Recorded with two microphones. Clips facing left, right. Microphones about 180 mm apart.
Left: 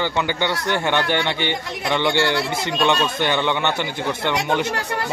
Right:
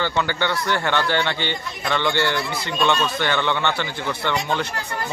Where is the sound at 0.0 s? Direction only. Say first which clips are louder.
Left 1 dB; 15° left (ahead or behind).